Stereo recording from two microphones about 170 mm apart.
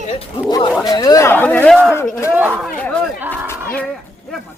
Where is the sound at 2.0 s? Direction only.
15° left (ahead or behind).